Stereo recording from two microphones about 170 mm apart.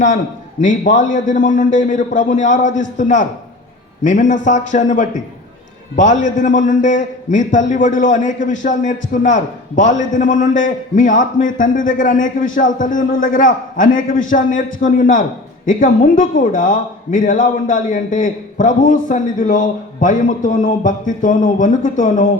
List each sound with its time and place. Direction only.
0.6 s a man's voice: 50° left (ahead or behind)